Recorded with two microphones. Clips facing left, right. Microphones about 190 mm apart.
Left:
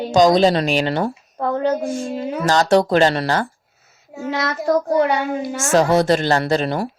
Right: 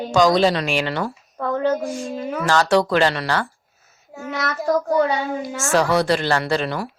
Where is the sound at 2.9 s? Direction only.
45° left (ahead or behind).